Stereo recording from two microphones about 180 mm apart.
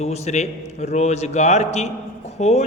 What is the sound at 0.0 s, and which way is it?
Speech, 40° left (ahead or behind).